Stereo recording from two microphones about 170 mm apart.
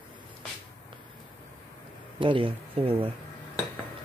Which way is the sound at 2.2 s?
30° right (ahead or behind).